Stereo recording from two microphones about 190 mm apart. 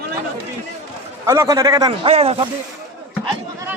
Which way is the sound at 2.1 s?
30° right (ahead or behind).